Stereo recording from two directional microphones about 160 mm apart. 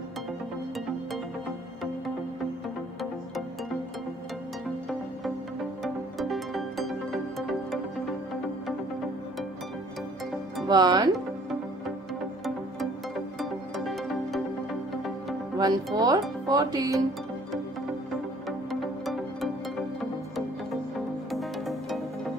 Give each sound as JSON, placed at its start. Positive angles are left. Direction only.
{"t": 6.1, "sound": "music", "side_deg": 0}
{"t": 10.7, "sound": "speech", "side_deg": -25}
{"t": 12.4, "sound": "music", "side_deg": 0}
{"t": 15.5, "sound": "speech", "side_deg": -25}
{"t": 18.7, "sound": "music", "side_deg": 0}
{"t": 21.3, "sound": "music", "side_deg": 0}